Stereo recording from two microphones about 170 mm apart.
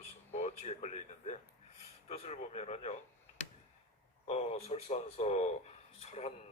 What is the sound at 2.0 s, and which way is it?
Speech, 40° left (ahead or behind).